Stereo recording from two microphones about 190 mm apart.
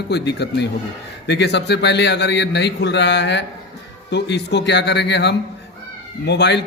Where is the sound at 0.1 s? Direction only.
60° left (ahead or behind).